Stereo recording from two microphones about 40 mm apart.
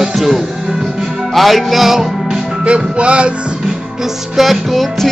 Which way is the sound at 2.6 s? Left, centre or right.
Right.